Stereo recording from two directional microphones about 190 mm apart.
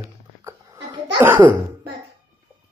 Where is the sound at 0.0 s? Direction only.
15° right (ahead or behind).